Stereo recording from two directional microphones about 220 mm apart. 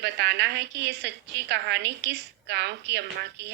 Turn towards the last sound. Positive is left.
turn(degrees=-50)  # may be behind; listen again after turning